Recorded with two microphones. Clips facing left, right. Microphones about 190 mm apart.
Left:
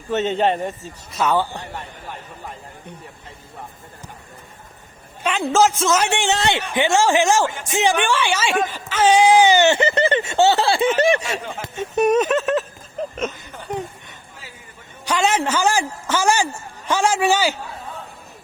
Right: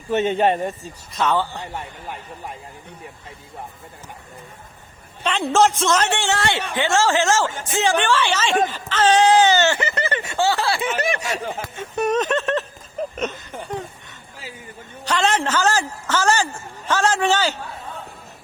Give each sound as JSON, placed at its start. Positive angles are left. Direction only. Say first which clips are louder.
{"t": 0.1, "sound": "a man's voice", "louder": "right 1 dB", "side_deg": -10}
{"t": 1.1, "sound": "a man's voice", "louder": "left 1 dB", "side_deg": 10}
{"t": 5.2, "sound": "a man's voice", "louder": "even", "side_deg": 5}
{"t": 13.0, "sound": "a sound", "louder": "even", "side_deg": -5}
{"t": 15.0, "sound": "a man's voice", "louder": "left 1 dB", "side_deg": 10}